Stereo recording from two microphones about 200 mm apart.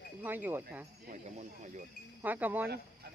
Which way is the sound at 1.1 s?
35° right (ahead or behind).